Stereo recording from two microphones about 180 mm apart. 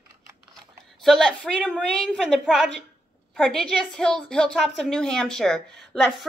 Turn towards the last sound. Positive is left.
turn(degrees=0)  # may be behind; listen again after turning